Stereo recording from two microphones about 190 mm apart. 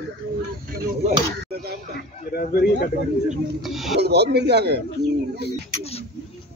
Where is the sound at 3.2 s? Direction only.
Centre (ahead or behind).